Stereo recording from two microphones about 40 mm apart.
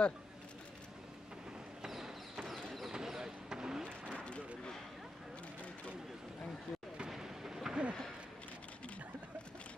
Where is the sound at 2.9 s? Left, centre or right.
Centre.